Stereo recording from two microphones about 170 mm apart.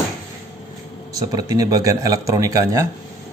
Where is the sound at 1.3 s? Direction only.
20° right (ahead or behind).